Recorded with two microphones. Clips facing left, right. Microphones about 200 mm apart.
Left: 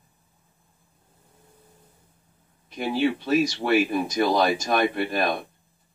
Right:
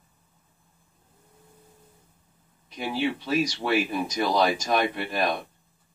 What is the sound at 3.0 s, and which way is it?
Speech, 55° left (ahead or behind).